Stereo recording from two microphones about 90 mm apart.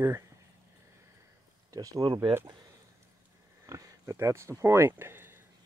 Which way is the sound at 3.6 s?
40° right (ahead or behind).